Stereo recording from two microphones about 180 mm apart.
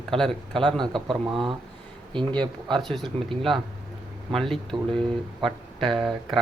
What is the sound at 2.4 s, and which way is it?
Speech, 25° right (ahead or behind).